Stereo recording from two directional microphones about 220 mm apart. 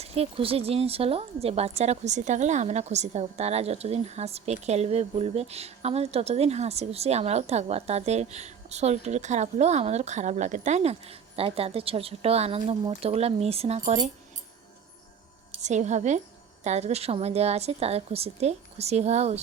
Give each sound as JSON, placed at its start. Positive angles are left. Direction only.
{"t": 0.0, "sound": "a woman's voice", "side_deg": -25}
{"t": 15.5, "sound": "a woman's voice", "side_deg": -30}